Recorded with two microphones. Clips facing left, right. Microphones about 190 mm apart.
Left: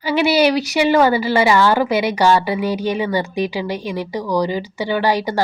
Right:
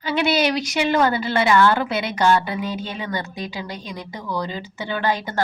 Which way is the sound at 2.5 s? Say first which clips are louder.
Left 6 dB; 80° left.